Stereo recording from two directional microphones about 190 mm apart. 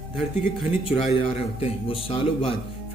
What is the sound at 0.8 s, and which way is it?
A man's voice, 30° left (ahead or behind).